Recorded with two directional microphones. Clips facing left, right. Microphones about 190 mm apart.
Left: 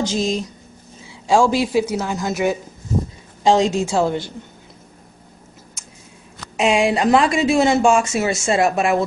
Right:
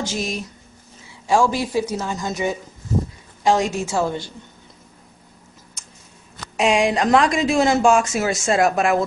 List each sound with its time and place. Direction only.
0.0 s speech: 20° left (ahead or behind)
1.2 s a woman's voice: 10° left (ahead or behind)
3.4 s a woman's voice: 20° left (ahead or behind)
6.5 s speech: centre (ahead or behind)